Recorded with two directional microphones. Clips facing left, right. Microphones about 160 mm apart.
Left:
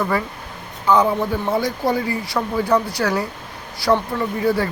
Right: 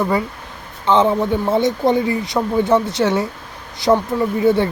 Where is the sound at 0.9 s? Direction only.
25° right (ahead or behind).